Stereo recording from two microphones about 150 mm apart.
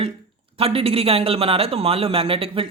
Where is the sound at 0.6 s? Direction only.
40° right (ahead or behind).